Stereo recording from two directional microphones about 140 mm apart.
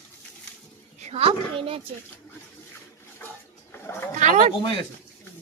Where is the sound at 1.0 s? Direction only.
50° right (ahead or behind).